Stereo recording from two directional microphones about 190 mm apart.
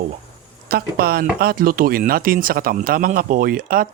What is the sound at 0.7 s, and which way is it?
Speech, 50° right (ahead or behind).